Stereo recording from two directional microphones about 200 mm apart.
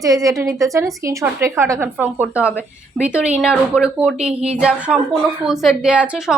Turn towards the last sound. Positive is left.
turn(degrees=-5)  # may be behind; listen again after turning